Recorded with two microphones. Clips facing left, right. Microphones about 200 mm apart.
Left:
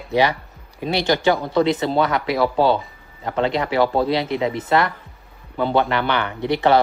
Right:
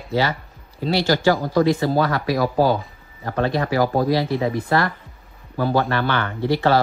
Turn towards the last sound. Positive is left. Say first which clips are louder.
# left 1 dB
turn(degrees=20)  # may be behind; listen again after turning